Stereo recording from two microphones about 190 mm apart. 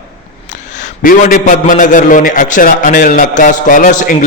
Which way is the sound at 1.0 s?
45° left (ahead or behind).